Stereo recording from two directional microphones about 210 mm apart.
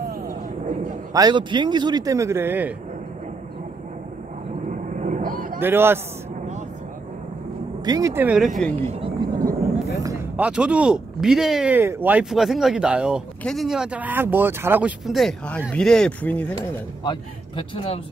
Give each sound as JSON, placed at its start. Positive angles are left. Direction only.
{"t": 0.3, "sound": "a sound", "side_deg": -35}
{"t": 1.1, "sound": "a man's voice", "side_deg": -20}
{"t": 4.6, "sound": "vehicle", "side_deg": -35}
{"t": 5.6, "sound": "a man's voice", "side_deg": -10}
{"t": 7.8, "sound": "speech", "side_deg": -15}
{"t": 8.8, "sound": "vehicle", "side_deg": -25}
{"t": 9.9, "sound": "speech", "side_deg": -10}
{"t": 17.0, "sound": "a man's voice", "side_deg": 25}